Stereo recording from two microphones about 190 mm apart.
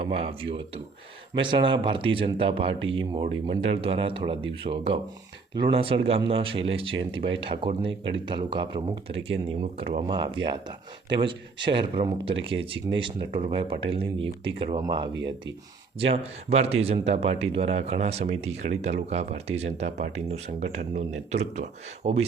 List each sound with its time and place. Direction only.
0.0 s speech: 30° right (ahead or behind)
14.2 s speech: 60° right (ahead or behind)
14.6 s speech: 25° right (ahead or behind)
15.1 s speech: 70° right (ahead or behind)
16.0 s speech: 30° right (ahead or behind)